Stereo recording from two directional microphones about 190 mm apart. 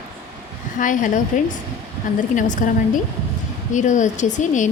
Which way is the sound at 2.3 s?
40° left (ahead or behind).